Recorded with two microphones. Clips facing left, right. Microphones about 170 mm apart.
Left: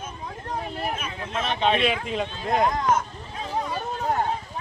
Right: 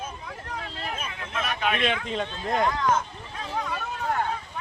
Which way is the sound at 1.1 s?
30° left (ahead or behind).